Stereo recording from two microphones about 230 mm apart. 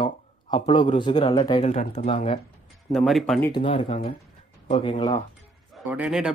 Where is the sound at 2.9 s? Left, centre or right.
Centre.